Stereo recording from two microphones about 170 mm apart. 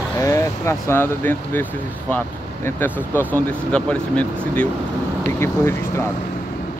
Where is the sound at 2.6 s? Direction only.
10° left (ahead or behind).